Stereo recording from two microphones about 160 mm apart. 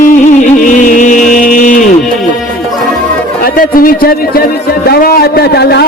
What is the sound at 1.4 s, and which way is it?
Music, 55° left (ahead or behind).